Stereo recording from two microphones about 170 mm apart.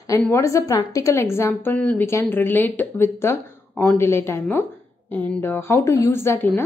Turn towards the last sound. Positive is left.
turn(degrees=15)  # may be behind; listen again after turning